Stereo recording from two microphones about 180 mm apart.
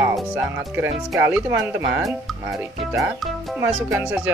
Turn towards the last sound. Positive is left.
turn(degrees=-10)  # may be behind; listen again after turning